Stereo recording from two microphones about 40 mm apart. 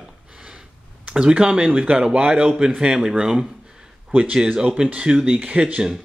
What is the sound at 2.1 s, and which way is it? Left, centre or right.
Speech, right.